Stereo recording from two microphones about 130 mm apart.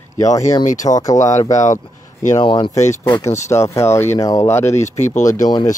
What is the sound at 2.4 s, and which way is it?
Speech, 35° left (ahead or behind).